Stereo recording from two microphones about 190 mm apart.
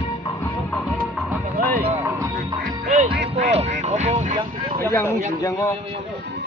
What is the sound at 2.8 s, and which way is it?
Music, 40° right (ahead or behind).